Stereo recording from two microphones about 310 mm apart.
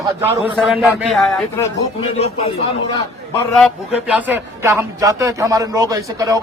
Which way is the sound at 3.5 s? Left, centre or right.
Centre.